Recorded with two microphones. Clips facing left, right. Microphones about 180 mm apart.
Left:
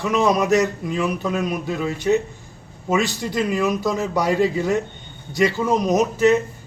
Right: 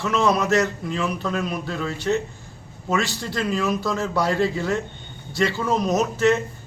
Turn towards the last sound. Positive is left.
turn(degrees=15)  # may be behind; listen again after turning